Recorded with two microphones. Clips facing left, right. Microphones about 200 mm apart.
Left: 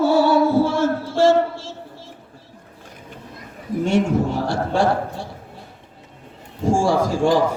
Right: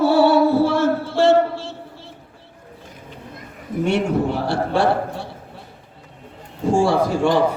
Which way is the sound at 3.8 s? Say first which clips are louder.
Even; 60° right (ahead or behind).